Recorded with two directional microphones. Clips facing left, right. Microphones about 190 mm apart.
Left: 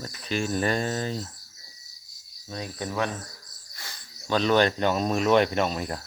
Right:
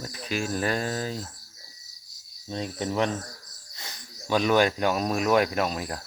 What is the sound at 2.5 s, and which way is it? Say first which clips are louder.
Speech: right 3 dB; 25° right (ahead or behind).